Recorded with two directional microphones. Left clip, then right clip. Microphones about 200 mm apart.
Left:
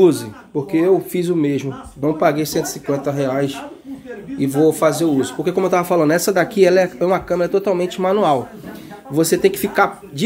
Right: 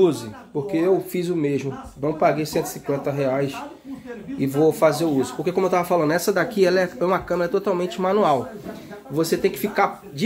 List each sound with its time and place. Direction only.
0.7 s speech: 15° left (ahead or behind)